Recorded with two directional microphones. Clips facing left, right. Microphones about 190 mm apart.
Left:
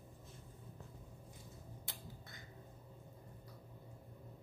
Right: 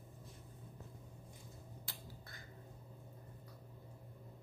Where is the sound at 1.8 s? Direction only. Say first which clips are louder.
Left 1 dB; 20° left (ahead or behind).